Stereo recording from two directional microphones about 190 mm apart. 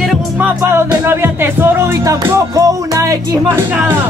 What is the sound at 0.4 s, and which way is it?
Music, 10° right (ahead or behind).